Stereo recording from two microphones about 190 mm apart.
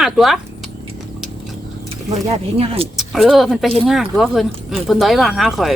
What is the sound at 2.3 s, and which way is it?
Speech, 30° right (ahead or behind).